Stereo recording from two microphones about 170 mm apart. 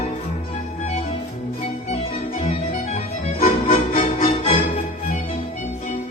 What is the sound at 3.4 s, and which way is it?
Music, 50° left (ahead or behind).